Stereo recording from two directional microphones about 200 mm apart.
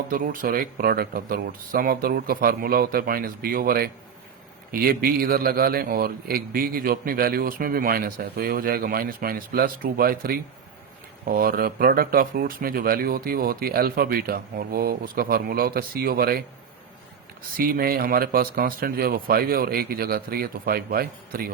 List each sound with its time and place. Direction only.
0.1 s a man's voice: 45° right (ahead or behind)
17.6 s a man's voice: 45° right (ahead or behind)